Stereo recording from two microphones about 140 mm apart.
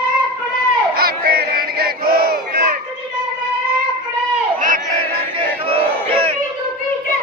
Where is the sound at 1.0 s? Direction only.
90° right.